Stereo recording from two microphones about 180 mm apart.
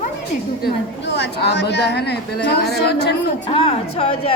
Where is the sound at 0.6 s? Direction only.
65° left (ahead or behind).